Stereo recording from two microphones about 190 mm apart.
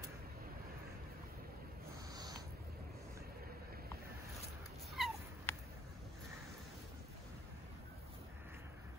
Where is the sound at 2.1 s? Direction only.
20° right (ahead or behind).